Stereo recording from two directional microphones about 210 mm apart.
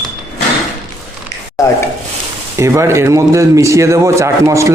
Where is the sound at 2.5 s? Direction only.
15° right (ahead or behind).